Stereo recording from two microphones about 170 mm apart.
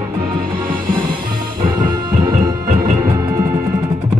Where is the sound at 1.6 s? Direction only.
25° right (ahead or behind).